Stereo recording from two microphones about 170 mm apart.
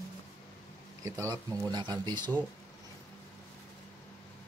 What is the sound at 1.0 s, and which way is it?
Speech, 20° right (ahead or behind).